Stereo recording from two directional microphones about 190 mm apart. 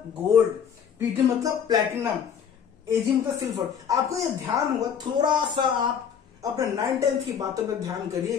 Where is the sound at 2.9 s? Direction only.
15° right (ahead or behind).